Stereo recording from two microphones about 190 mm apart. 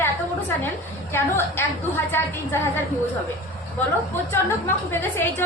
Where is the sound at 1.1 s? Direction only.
15° left (ahead or behind).